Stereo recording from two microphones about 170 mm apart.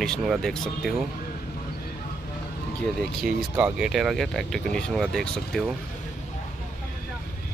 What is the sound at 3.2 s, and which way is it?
Speech, 5° right (ahead or behind).